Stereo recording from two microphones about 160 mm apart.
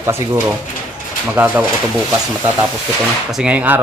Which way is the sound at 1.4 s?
10° right (ahead or behind).